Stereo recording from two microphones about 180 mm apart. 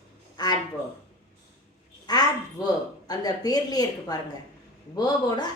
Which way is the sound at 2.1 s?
20° left (ahead or behind).